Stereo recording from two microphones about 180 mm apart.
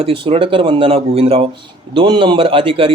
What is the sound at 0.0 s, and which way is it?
A man's voice, 30° right (ahead or behind).